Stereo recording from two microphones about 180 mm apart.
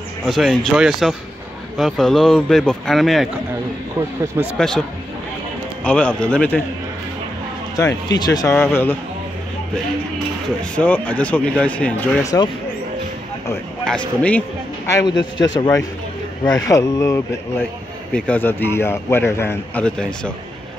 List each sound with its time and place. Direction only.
0.2 s speech: centre (ahead or behind)
4.6 s speech: 5° left (ahead or behind)
5.9 s a man's voice: 5° left (ahead or behind)
7.7 s speech: 20° left (ahead or behind)
10.6 s a man's voice: 10° left (ahead or behind)
12.2 s speech: 20° left (ahead or behind)
13.8 s a man's voice: 5° left (ahead or behind)
14.9 s a man's voice: 20° left (ahead or behind); by 20.3 s 5° left (ahead or behind)